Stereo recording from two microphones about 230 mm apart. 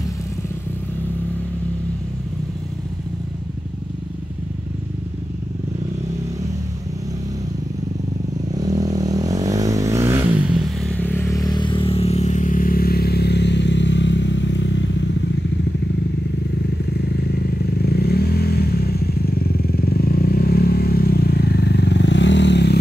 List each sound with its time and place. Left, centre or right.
8.5 s vehicle: centre
10.8 s vehicle: centre; by 15.2 s left
16.9 s vehicle: left